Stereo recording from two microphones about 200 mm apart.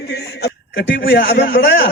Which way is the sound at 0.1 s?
60° left (ahead or behind).